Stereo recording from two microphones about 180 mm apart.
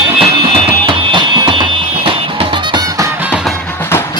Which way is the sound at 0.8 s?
25° right (ahead or behind).